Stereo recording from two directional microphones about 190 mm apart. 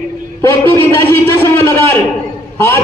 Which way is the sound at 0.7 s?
15° left (ahead or behind).